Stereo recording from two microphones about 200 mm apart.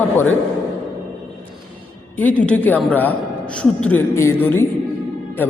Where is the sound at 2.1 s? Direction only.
5° left (ahead or behind).